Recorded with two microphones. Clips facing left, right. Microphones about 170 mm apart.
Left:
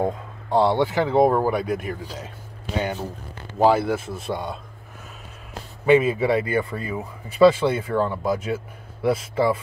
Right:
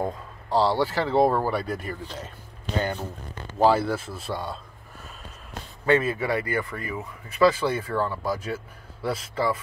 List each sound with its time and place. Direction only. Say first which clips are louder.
0.0 s speech: left 5 dB; 20° left (ahead or behind)
1.5 s speech: left 4 dB; centre (ahead or behind); by 4.6 s 20° left (ahead or behind)
5.9 s speech: left 5 dB; 15° left (ahead or behind)